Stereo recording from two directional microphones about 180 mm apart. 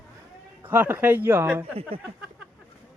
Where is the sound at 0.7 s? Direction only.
10° right (ahead or behind).